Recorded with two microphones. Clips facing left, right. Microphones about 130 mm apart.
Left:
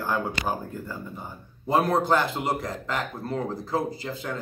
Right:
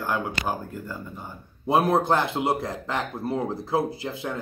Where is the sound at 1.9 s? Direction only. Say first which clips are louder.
Right 2 dB; 20° right (ahead or behind).